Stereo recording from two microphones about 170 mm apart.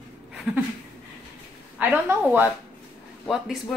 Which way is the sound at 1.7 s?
10° right (ahead or behind).